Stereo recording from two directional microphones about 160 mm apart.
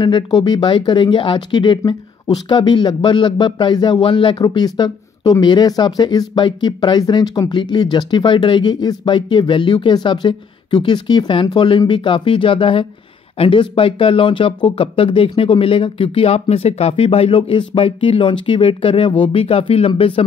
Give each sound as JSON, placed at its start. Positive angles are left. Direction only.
{"t": 0.0, "sound": "speech", "side_deg": 25}